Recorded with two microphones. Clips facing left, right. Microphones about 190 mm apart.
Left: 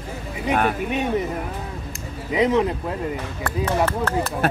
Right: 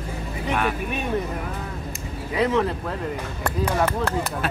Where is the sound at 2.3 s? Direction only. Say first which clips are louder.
Left 3 dB; 15° left (ahead or behind).